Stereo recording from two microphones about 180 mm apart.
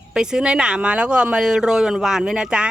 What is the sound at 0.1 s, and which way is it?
Speech, 5° right (ahead or behind).